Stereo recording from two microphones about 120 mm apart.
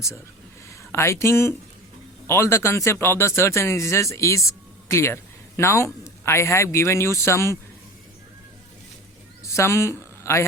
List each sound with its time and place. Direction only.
0.9 s speech: 20° left (ahead or behind)
9.4 s a woman's voice: 25° left (ahead or behind)